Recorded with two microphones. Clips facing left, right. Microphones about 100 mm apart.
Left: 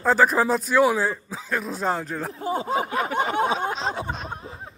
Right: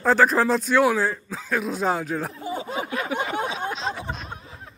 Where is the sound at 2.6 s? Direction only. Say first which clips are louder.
Left 4 dB; 35° left (ahead or behind).